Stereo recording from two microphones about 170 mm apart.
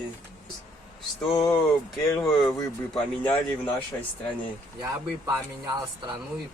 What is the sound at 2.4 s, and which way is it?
Speech, 5° left (ahead or behind).